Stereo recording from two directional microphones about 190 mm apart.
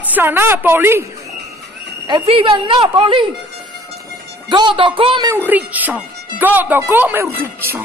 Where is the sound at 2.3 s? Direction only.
30° right (ahead or behind).